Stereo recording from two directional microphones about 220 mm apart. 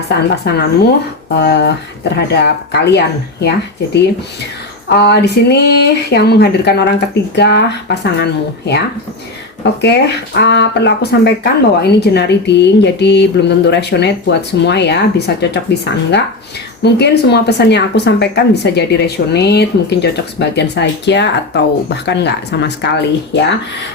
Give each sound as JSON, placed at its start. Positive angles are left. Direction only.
{"t": 0.1, "sound": "speech", "side_deg": 50}
{"t": 4.9, "sound": "speech", "side_deg": 50}
{"t": 9.8, "sound": "speech", "side_deg": 50}